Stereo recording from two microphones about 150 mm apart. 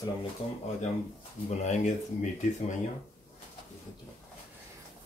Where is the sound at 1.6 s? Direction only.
50° left (ahead or behind).